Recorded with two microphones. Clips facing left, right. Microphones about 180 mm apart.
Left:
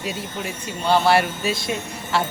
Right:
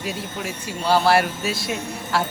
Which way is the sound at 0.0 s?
Centre (ahead or behind).